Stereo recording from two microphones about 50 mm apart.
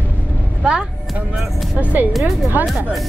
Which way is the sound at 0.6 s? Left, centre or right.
Centre.